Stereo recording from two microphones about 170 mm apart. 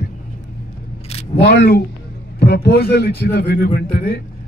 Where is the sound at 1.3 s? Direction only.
75° left (ahead or behind).